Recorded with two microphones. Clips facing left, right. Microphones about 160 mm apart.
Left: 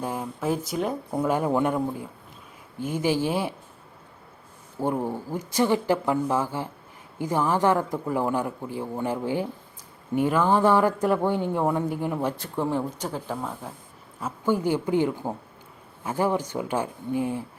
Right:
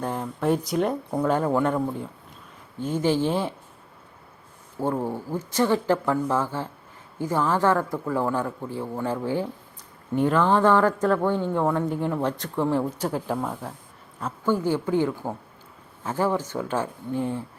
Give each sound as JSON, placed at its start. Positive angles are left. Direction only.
{"t": 0.0, "sound": "speech", "side_deg": 5}
{"t": 2.8, "sound": "a man's voice", "side_deg": 10}
{"t": 4.8, "sound": "a man's voice", "side_deg": 15}